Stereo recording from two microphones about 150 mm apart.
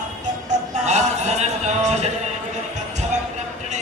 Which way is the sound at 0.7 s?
50° right (ahead or behind).